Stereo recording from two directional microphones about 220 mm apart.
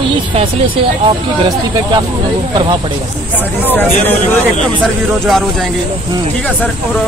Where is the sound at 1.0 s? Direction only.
25° right (ahead or behind).